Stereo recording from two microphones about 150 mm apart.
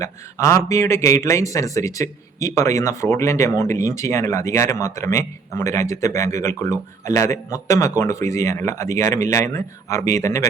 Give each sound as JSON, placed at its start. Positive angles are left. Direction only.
{"t": 0.0, "sound": "speech", "side_deg": 20}